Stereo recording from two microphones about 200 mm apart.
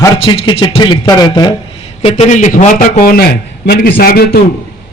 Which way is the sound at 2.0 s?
30° left (ahead or behind).